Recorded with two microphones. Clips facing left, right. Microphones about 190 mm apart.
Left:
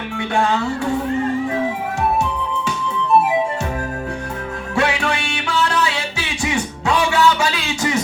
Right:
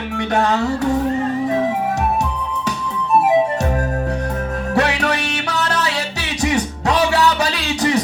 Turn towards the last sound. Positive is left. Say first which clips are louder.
# right 3 dB
turn(degrees=-35)  # may be behind; listen again after turning